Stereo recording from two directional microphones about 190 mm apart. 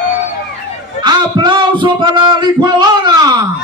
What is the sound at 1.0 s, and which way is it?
Music, 25° right (ahead or behind).